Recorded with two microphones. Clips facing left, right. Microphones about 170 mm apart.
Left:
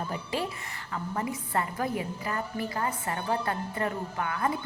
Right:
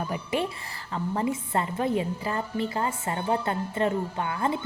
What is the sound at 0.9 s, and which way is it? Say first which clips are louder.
A woman's voice: right 5 dB; 30° right (ahead or behind).